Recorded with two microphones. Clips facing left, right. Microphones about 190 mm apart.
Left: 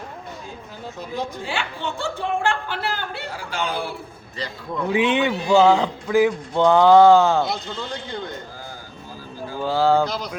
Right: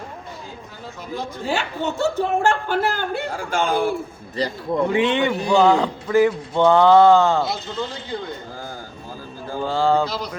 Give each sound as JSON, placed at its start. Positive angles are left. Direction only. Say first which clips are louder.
{"t": 1.5, "sound": "speech", "louder": "right 4 dB", "side_deg": -40}
{"t": 4.4, "sound": "speech", "louder": "right 7 dB", "side_deg": -35}
{"t": 4.9, "sound": "a man's voice", "louder": "left 2 dB", "side_deg": 10}
{"t": 9.6, "sound": "a man's voice", "louder": "left 1 dB", "side_deg": 5}